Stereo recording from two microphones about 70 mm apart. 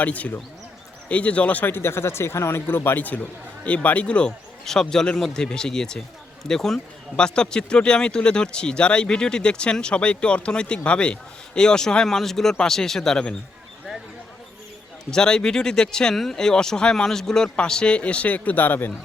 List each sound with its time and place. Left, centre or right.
0.0 s speech: left
1.7 s speech: left; by 13.3 s centre
15.1 s speech: centre; by 18.9 s left